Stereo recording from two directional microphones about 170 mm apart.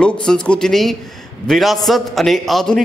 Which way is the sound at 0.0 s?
5° left (ahead or behind).